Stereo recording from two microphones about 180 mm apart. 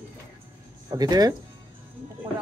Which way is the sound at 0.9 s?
20° right (ahead or behind).